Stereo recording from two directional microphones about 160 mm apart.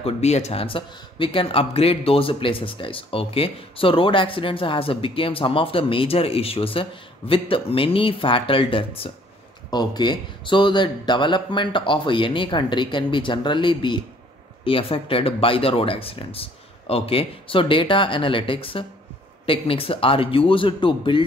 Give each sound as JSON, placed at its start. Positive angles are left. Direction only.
{"t": 0.0, "sound": "speech", "side_deg": 45}